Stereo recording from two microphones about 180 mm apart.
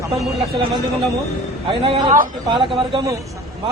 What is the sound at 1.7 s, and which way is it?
A man's voice, 30° right (ahead or behind).